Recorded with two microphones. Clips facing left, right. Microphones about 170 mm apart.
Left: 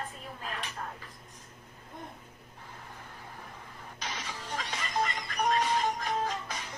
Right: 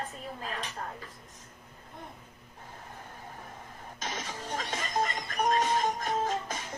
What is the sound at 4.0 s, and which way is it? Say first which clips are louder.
Music: right 3 dB; 45° right (ahead or behind).